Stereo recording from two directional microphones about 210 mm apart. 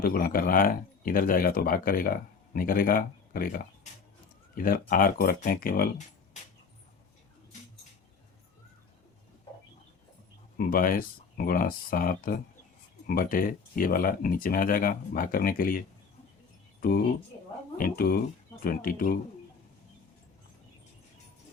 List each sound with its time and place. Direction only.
0.0 s speech: 45° left (ahead or behind)
4.5 s speech: 40° left (ahead or behind)
10.6 s speech: 45° left (ahead or behind)
17.7 s speech: 45° left (ahead or behind)